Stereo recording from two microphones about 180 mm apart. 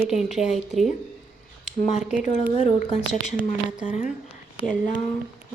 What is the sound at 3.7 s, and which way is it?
Speech, 5° right (ahead or behind).